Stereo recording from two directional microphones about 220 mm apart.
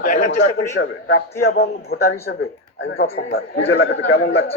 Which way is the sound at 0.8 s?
60° left (ahead or behind).